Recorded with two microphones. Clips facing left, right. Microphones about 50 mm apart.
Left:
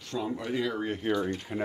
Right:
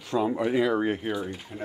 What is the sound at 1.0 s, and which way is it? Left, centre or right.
Speech, centre.